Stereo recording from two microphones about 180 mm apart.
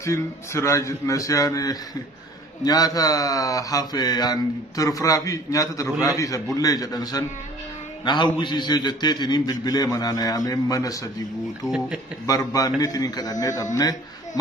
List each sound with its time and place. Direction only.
0.0 s a man's voice: 15° left (ahead or behind)
11.6 s speech: centre (ahead or behind)
12.3 s speech: 20° left (ahead or behind)